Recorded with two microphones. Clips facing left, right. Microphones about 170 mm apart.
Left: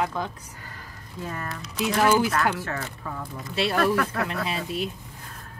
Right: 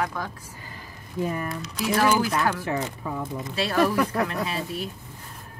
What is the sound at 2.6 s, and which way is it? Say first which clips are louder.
Speech: right 4 dB; 15° right (ahead or behind).